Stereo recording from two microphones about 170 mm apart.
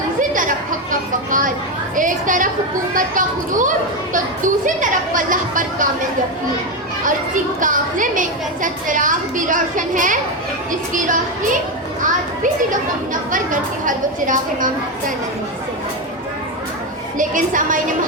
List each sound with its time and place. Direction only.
0.2 s a sound: 50° right (ahead or behind)
2.0 s a woman's voice: 50° right (ahead or behind)
7.6 s a woman's voice: 50° right (ahead or behind)
13.3 s a woman's voice: 50° right (ahead or behind)
17.2 s a woman's voice: 50° right (ahead or behind)